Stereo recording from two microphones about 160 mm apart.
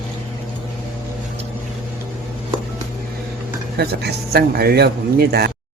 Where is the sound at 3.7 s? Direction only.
90° right.